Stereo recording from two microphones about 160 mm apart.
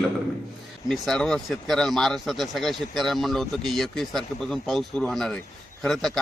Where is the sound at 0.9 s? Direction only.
5° left (ahead or behind).